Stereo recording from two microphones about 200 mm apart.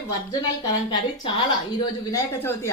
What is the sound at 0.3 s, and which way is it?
A woman's voice, 20° left (ahead or behind).